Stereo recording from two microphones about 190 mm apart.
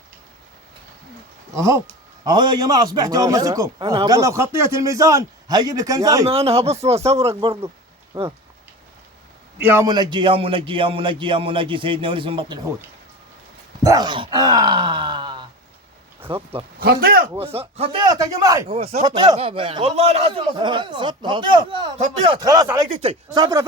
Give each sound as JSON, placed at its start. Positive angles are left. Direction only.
{"t": 1.5, "sound": "a man's voice", "side_deg": -15}
{"t": 6.2, "sound": "a man's voice", "side_deg": -30}
{"t": 9.6, "sound": "a man's voice", "side_deg": -10}
{"t": 13.8, "sound": "a man's voice", "side_deg": -20}
{"t": 16.8, "sound": "speech", "side_deg": -55}
{"t": 17.3, "sound": "a man's voice", "side_deg": -30}
{"t": 18.7, "sound": "a man's voice", "side_deg": -30}
{"t": 22.4, "sound": "speech", "side_deg": -15}
{"t": 22.9, "sound": "a man's voice", "side_deg": -30}